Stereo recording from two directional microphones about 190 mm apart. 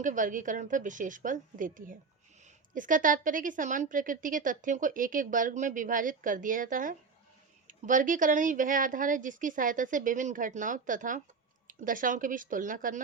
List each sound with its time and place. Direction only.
0.0 s a woman's voice: 40° right (ahead or behind)